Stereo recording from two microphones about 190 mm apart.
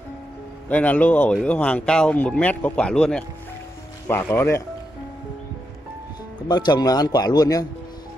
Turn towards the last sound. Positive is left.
turn(degrees=20)  # may be behind; listen again after turning